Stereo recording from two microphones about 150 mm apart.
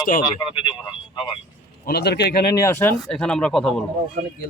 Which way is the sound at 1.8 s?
90° left.